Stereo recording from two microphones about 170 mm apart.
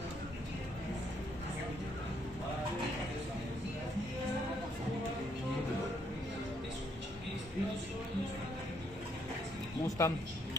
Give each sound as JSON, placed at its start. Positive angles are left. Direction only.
{"t": 10.0, "sound": "speech", "side_deg": 15}